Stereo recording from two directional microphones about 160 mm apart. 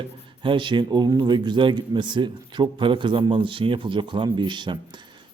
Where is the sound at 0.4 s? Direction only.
30° right (ahead or behind).